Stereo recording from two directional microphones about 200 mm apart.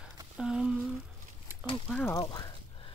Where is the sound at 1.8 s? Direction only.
10° left (ahead or behind).